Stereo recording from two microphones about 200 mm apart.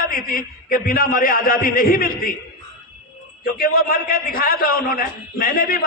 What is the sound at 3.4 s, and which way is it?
A man's voice, 45° left (ahead or behind).